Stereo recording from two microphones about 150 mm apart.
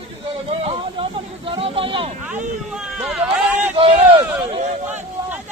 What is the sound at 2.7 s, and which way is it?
Run, 5° right (ahead or behind).